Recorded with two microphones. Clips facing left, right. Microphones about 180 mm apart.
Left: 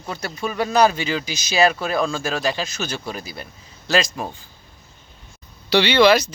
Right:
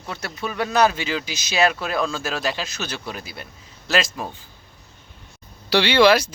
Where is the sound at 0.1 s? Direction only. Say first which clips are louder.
Left 3 dB; centre (ahead or behind).